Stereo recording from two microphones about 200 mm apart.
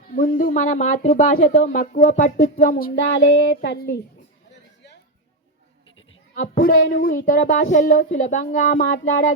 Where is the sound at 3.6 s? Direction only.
60° left (ahead or behind).